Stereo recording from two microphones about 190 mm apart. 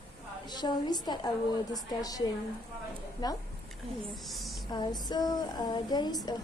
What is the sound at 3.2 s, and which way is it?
Speech, 20° left (ahead or behind).